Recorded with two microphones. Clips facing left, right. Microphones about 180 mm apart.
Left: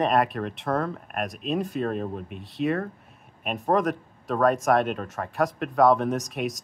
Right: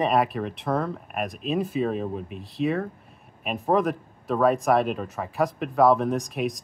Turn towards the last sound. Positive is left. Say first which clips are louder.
# right 1 dB
turn(degrees=0)  # may be behind; listen again after turning